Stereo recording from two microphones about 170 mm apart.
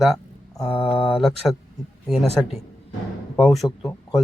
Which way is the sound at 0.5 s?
30° left (ahead or behind).